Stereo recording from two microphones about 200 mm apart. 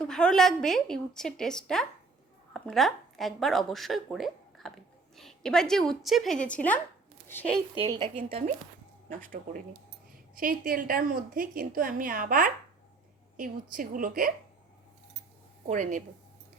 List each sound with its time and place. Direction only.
0.0 s a woman's voice: 5° left (ahead or behind)
7.8 s speech: 25° right (ahead or behind)
9.0 s a woman's voice: 40° right (ahead or behind)
15.6 s speech: 40° right (ahead or behind)